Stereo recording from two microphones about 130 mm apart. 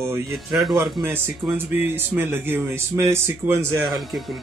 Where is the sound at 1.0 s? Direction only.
15° right (ahead or behind).